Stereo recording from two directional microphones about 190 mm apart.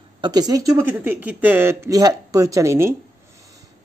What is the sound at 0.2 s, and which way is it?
Speech, 20° right (ahead or behind).